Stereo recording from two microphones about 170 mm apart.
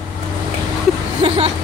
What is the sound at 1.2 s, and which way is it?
Speech, 35° right (ahead or behind).